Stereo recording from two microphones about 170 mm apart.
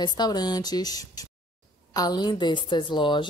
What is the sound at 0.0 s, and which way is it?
Speech, 25° left (ahead or behind).